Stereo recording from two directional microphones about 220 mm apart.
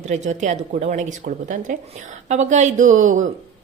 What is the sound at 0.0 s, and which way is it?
A woman's voice, 30° right (ahead or behind).